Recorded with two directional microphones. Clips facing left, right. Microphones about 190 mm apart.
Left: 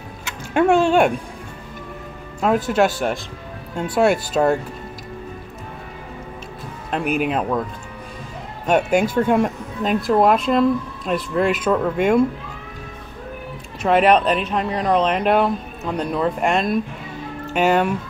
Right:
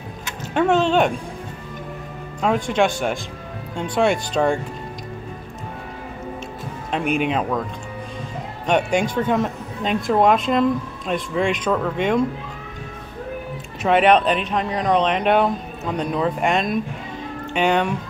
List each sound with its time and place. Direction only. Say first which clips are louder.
0.6 s speech: left 2 dB; 10° left (ahead or behind)
2.4 s speech: left 2 dB; 5° left (ahead or behind)
6.9 s speech: even; centre (ahead or behind)
8.6 s speech: left 2 dB; 5° left (ahead or behind)
13.8 s speech: even; centre (ahead or behind)